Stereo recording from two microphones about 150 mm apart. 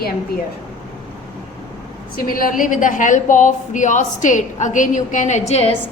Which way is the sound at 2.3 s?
65° left (ahead or behind).